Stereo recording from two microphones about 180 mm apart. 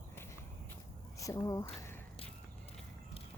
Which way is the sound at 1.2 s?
20° left (ahead or behind).